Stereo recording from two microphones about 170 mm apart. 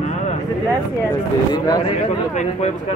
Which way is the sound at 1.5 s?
25° left (ahead or behind).